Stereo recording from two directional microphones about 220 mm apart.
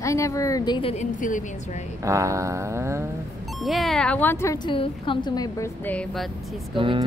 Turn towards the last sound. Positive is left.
turn(degrees=-20)  # may be behind; listen again after turning